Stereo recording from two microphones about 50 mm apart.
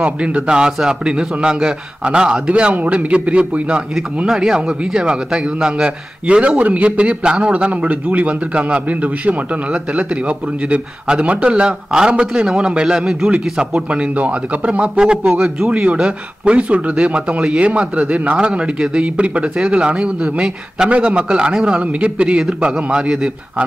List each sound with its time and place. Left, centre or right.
0.0 s a man's voice: right